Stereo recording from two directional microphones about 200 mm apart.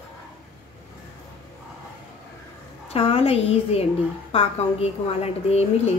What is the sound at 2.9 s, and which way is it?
A woman's voice, 30° left (ahead or behind).